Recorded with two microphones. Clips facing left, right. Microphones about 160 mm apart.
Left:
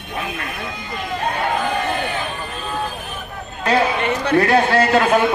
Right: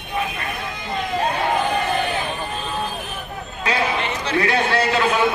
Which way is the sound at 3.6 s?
50° left (ahead or behind).